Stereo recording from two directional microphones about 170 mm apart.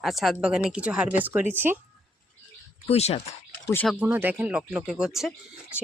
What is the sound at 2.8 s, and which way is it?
Speech, 35° left (ahead or behind).